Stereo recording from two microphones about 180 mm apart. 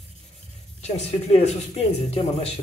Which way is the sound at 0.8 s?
35° left (ahead or behind).